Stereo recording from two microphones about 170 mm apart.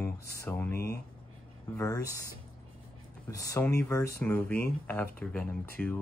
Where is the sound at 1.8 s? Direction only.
20° left (ahead or behind).